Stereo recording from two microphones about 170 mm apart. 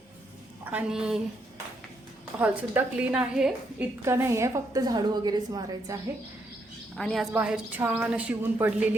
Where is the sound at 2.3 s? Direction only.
10° right (ahead or behind).